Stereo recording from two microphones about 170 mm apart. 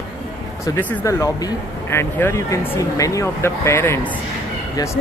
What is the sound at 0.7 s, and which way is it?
Speech, 20° left (ahead or behind).